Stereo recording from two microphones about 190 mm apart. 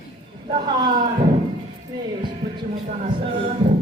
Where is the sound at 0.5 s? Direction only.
25° right (ahead or behind).